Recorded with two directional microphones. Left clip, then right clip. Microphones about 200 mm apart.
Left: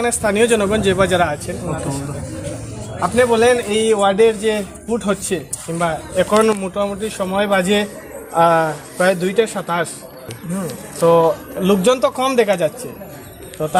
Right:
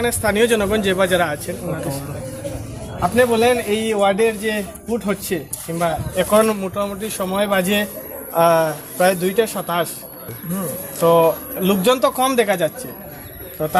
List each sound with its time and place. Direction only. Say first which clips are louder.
0.0 s a man's voice: left 1 dB; centre (ahead or behind)
3.0 s a man's voice: left 2 dB; 15° left (ahead or behind)